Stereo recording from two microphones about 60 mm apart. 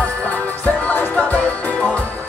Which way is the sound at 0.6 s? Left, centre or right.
Left.